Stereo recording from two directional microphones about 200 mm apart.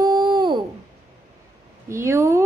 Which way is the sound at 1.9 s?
15° right (ahead or behind).